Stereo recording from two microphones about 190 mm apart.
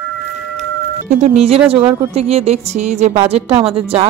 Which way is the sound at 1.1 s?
35° right (ahead or behind).